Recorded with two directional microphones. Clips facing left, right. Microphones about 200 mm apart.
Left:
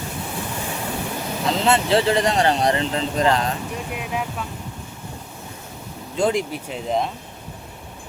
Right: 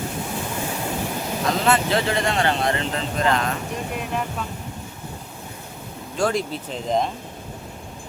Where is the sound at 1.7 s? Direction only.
30° left (ahead or behind).